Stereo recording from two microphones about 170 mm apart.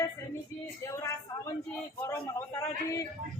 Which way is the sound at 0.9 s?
15° left (ahead or behind).